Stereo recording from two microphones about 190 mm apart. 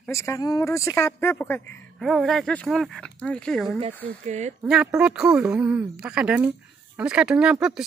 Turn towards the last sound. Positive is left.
turn(degrees=-5)  # may be behind; listen again after turning